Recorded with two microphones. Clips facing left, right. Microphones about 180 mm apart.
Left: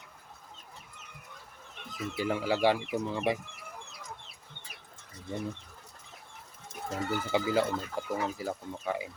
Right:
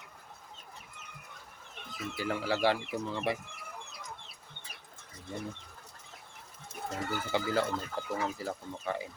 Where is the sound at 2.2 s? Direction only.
15° left (ahead or behind).